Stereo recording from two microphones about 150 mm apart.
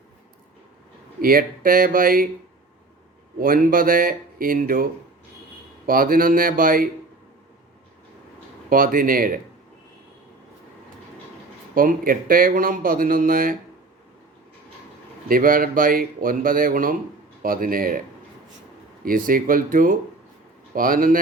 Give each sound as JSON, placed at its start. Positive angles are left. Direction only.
{"t": 1.2, "sound": "speech", "side_deg": -70}
{"t": 3.3, "sound": "speech", "side_deg": -70}
{"t": 8.7, "sound": "speech", "side_deg": -70}
{"t": 11.7, "sound": "speech", "side_deg": -70}
{"t": 15.3, "sound": "speech", "side_deg": -70}
{"t": 19.0, "sound": "speech", "side_deg": -70}